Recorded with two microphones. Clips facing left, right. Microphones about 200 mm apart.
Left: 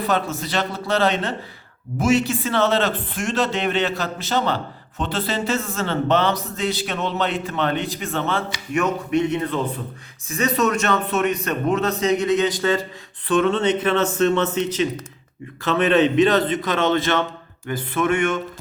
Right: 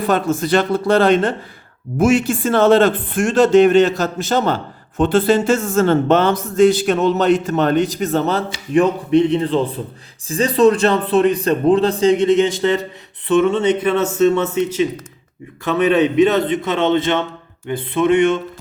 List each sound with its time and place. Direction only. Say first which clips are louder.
0.0 s a man's voice: right 6 dB; 50° right (ahead or behind); by 12.8 s 25° right (ahead or behind)
13.2 s speech: right 4 dB; 10° right (ahead or behind)
16.6 s a sound: right 3 dB; 25° right (ahead or behind)